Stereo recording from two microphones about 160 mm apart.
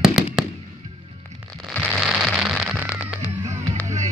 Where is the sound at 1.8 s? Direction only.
5° right (ahead or behind).